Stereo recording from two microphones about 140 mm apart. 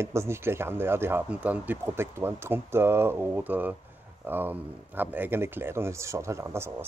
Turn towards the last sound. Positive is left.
turn(degrees=-20)  # may be behind; listen again after turning